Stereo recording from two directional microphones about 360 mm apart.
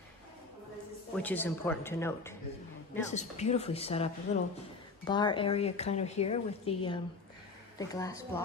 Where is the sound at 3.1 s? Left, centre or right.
Centre.